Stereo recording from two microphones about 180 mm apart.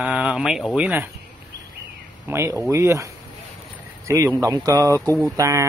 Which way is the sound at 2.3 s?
15° right (ahead or behind).